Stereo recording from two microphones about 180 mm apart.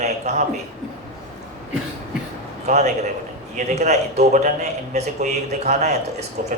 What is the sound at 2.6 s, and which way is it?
A man's voice, 40° right (ahead or behind).